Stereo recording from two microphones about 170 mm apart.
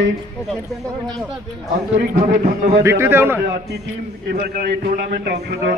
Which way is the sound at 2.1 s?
45° right (ahead or behind).